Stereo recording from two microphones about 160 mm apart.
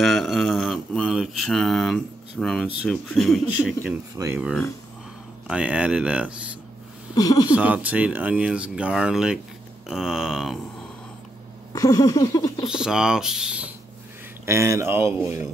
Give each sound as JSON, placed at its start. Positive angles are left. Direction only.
{"t": 0.0, "sound": "mantra", "side_deg": 0}
{"t": 3.8, "sound": "speech", "side_deg": -15}
{"t": 5.5, "sound": "speech", "side_deg": -5}
{"t": 7.2, "sound": "a sound", "side_deg": 25}
{"t": 7.5, "sound": "speech", "side_deg": -10}
{"t": 11.7, "sound": "a sound", "side_deg": 20}
{"t": 12.6, "sound": "speech", "side_deg": -5}
{"t": 14.4, "sound": "speech", "side_deg": -15}